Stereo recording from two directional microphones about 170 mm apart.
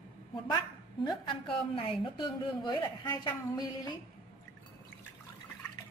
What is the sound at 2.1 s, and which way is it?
Speech, 25° left (ahead or behind).